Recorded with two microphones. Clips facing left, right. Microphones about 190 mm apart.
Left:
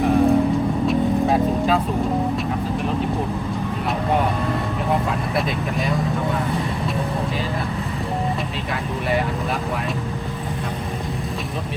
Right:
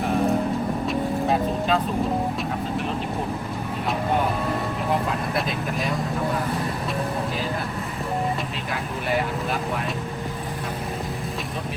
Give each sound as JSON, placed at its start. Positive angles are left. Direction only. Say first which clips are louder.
{"t": 0.0, "sound": "music", "louder": "left 6 dB", "side_deg": 0}
{"t": 0.9, "sound": "vehicle", "louder": "left 4 dB", "side_deg": 0}
{"t": 4.9, "sound": "vehicle", "louder": "left 2 dB", "side_deg": 0}
{"t": 8.7, "sound": "speech", "louder": "left 2 dB", "side_deg": 0}